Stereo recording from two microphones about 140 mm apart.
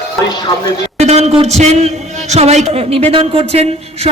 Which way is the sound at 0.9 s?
50° right (ahead or behind).